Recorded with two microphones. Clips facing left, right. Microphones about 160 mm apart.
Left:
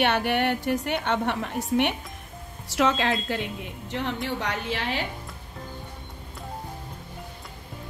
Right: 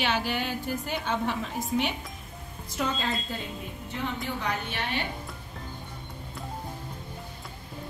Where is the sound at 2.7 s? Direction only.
80° left.